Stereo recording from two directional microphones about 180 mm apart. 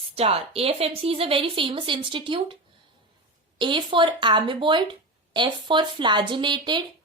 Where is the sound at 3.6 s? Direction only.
25° right (ahead or behind).